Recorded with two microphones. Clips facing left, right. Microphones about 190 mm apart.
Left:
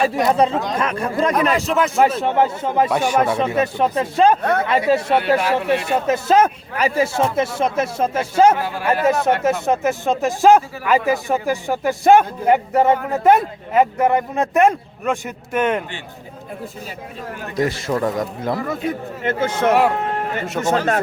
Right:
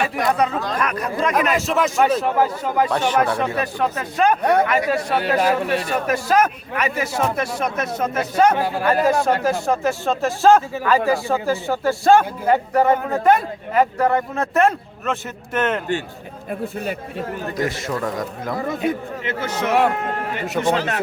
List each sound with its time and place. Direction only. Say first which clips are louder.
0.0 s speech: left 3 dB; 25° left (ahead or behind)
1.5 s a man's voice: left 1 dB; centre (ahead or behind)
2.2 s speech: left 1 dB; 25° left (ahead or behind)
2.9 s speech: left 2 dB; 10° left (ahead or behind)
3.2 s speech: left 2 dB; 20° left (ahead or behind)
17.7 s speech: left 3 dB; 30° left (ahead or behind)
19.2 s a man's voice: left 8 dB; 50° left (ahead or behind)